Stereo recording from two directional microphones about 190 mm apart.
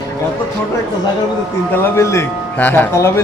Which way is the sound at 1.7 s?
15° left (ahead or behind).